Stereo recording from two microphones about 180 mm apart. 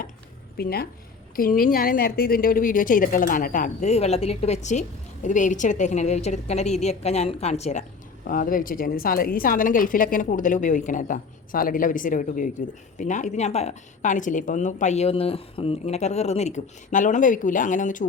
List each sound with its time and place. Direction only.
0.5 s a woman's voice: 60° left (ahead or behind); by 7.9 s 40° left (ahead or behind)
8.3 s a woman's voice: 50° left (ahead or behind)